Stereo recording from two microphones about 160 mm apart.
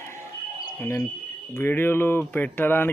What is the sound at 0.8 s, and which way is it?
Speech, 15° left (ahead or behind).